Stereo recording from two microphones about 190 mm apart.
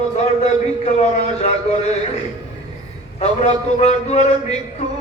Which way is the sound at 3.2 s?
35° left (ahead or behind).